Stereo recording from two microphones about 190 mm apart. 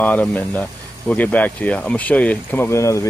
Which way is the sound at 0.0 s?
10° left (ahead or behind).